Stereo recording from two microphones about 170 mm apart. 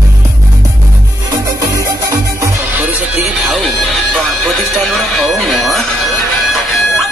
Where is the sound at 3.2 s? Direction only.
Centre (ahead or behind).